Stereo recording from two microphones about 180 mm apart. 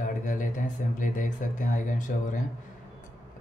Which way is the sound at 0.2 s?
45° left (ahead or behind).